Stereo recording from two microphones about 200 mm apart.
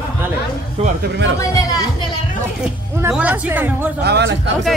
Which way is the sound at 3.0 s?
5° right (ahead or behind).